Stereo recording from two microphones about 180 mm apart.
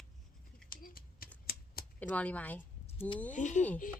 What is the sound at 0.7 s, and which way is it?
Scissors, 50° left (ahead or behind).